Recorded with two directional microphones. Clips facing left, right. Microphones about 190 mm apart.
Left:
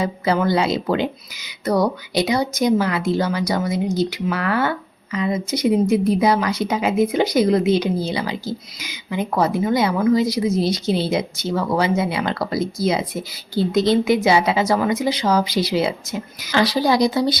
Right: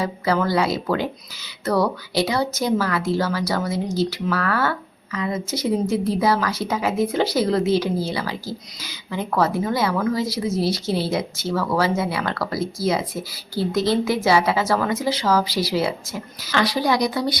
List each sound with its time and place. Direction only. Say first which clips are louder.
0.0 s a woman's voice: left 2 dB; 20° left (ahead or behind)
16.6 s a woman's voice: left 3 dB; 30° left (ahead or behind)